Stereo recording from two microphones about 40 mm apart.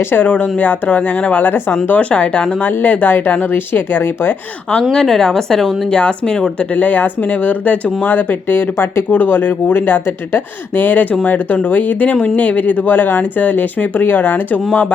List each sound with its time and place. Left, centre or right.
0.2 s speech: left
0.7 s speech: left
1.2 s speech: left
1.5 s speech: left
1.9 s speech: left
2.8 s speech: left
4.9 s a woman's voice: centre
5.9 s speech: left
6.6 s speech: left
8.0 s speech: left
14.7 s speech: left